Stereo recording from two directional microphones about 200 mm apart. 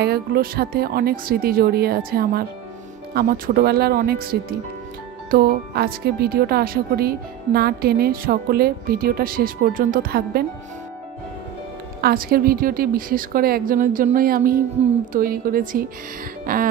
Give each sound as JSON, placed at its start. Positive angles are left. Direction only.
{"t": 0.0, "sound": "speech", "side_deg": -50}
{"t": 12.0, "sound": "speech", "side_deg": -50}